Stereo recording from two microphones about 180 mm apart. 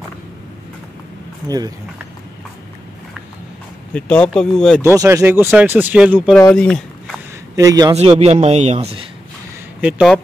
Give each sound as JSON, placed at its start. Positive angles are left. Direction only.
{"t": 3.9, "sound": "speech", "side_deg": 5}
{"t": 4.8, "sound": "speech", "side_deg": -15}
{"t": 6.5, "sound": "a sound", "side_deg": 5}
{"t": 7.5, "sound": "a man's voice", "side_deg": -20}
{"t": 7.9, "sound": "speech", "side_deg": -35}
{"t": 9.8, "sound": "speech", "side_deg": -5}